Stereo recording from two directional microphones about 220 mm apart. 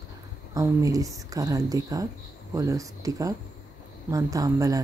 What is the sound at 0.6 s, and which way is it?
Speech, 15° right (ahead or behind).